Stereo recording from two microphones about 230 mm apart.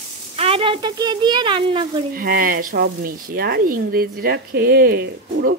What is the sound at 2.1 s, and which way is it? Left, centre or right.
Speech, right.